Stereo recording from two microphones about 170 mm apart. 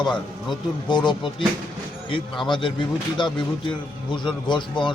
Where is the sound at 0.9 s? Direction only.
25° left (ahead or behind).